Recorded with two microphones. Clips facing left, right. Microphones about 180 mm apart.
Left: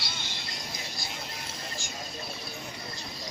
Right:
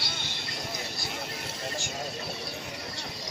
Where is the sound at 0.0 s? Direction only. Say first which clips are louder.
Right 2 dB; 55° right (ahead or behind).